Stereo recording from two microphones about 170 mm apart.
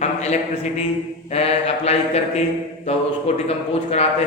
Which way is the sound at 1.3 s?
35° left (ahead or behind).